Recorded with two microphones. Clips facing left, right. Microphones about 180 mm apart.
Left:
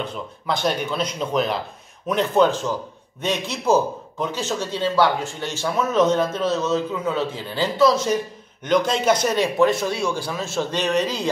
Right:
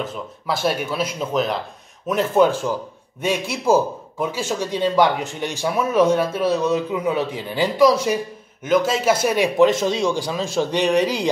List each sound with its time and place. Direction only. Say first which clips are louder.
0.0 s speech: right 1 dB; 5° right (ahead or behind)